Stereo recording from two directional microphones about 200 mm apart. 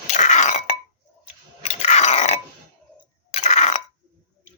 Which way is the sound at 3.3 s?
35° left (ahead or behind).